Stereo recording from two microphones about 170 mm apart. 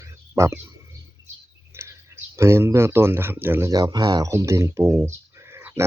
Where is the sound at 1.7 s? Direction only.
15° right (ahead or behind).